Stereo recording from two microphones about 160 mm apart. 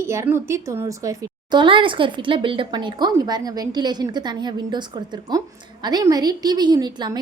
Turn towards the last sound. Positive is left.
turn(degrees=-25)  # may be behind; listen again after turning